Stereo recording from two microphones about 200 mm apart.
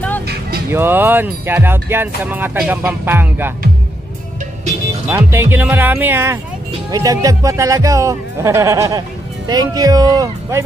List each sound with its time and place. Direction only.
0.7 s speech: 10° right (ahead or behind)
5.0 s speech: 10° right (ahead or behind)